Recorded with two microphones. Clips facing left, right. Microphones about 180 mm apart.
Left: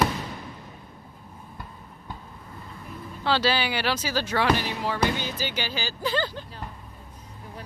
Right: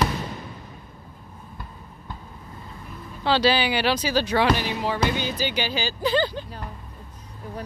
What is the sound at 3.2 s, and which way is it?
Speech, 15° right (ahead or behind).